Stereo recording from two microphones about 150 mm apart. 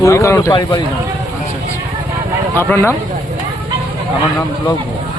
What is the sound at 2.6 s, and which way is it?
Speech, 15° left (ahead or behind).